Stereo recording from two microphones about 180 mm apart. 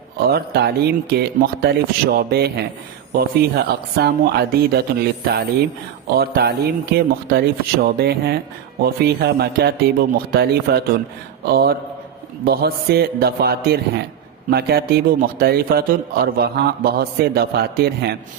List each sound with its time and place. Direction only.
0.3 s speech: 60° right (ahead or behind)